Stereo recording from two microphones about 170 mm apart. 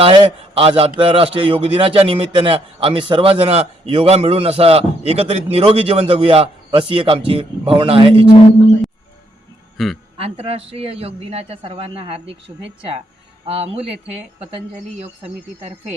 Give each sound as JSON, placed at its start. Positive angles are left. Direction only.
{"t": 0.0, "sound": "a man's voice", "side_deg": -30}
{"t": 8.3, "sound": "a man's voice", "side_deg": 20}
{"t": 9.7, "sound": "speech", "side_deg": 0}
{"t": 10.2, "sound": "a man's voice", "side_deg": -35}
{"t": 13.5, "sound": "a man's voice", "side_deg": -35}
{"t": 14.9, "sound": "a man's voice", "side_deg": -40}